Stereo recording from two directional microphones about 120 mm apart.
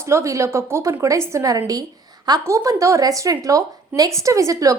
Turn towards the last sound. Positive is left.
turn(degrees=-30)  # may be behind; listen again after turning